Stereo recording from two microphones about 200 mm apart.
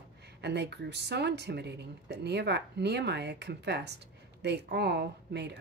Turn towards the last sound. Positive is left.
turn(degrees=-55)  # may be behind; listen again after turning